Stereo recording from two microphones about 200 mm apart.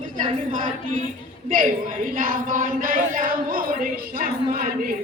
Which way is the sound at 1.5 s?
40° right (ahead or behind).